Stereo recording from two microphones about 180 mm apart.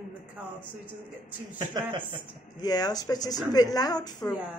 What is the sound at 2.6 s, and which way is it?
Speech, 20° left (ahead or behind).